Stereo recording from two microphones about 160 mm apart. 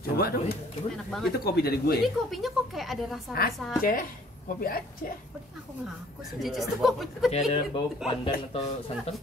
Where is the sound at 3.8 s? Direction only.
60° left (ahead or behind).